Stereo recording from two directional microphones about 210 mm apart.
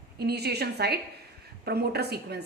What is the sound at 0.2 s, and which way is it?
A woman's voice, 50° right (ahead or behind).